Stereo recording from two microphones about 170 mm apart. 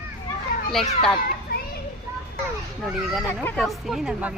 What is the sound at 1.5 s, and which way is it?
Children playing, 60° left (ahead or behind).